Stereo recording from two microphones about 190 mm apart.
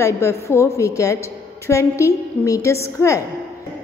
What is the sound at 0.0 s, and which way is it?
A woman's voice, 15° left (ahead or behind).